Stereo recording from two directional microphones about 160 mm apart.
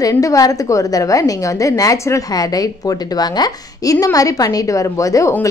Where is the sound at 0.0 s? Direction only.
20° left (ahead or behind).